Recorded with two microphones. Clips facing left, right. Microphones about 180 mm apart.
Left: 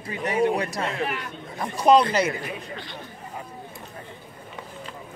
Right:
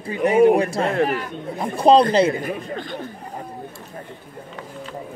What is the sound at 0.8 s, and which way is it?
Speech, 55° right (ahead or behind).